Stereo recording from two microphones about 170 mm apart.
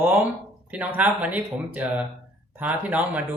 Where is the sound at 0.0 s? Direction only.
15° right (ahead or behind).